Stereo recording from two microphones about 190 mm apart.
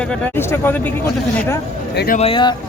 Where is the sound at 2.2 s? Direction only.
25° left (ahead or behind).